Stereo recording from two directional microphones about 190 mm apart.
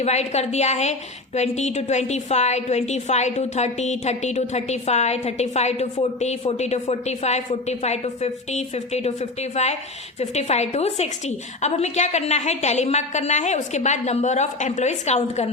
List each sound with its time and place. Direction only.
0.0 s a woman's voice: 35° left (ahead or behind)